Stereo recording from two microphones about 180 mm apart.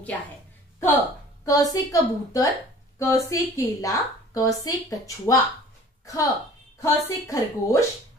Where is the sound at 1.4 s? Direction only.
20° left (ahead or behind).